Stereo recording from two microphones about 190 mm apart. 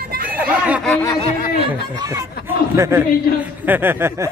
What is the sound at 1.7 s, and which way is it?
A man's voice, 20° right (ahead or behind).